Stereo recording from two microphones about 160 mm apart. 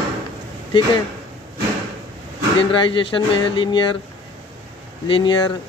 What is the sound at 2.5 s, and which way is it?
Speech, 30° left (ahead or behind).